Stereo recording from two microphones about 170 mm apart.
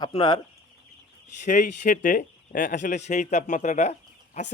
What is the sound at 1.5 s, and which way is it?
Speech, 50° left (ahead or behind).